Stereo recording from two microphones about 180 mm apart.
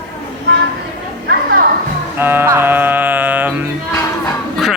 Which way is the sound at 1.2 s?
55° right (ahead or behind).